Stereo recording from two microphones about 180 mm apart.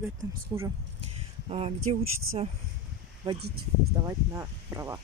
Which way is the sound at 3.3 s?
65° right (ahead or behind).